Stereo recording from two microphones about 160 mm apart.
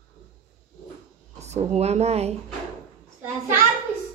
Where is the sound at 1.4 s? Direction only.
45° right (ahead or behind).